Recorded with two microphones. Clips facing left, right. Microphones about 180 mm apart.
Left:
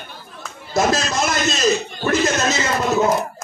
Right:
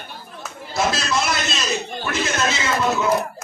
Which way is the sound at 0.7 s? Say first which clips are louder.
Left 3 dB; 45° left (ahead or behind).